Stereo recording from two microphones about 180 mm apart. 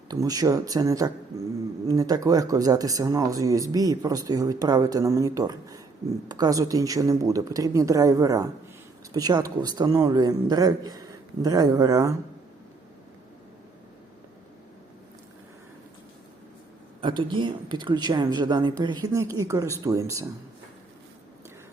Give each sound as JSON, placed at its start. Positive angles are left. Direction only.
{"t": 0.1, "sound": "speech", "side_deg": -20}
{"t": 17.0, "sound": "speech", "side_deg": -25}